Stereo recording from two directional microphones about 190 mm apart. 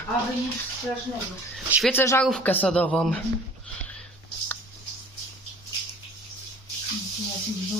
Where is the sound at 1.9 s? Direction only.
10° left (ahead or behind).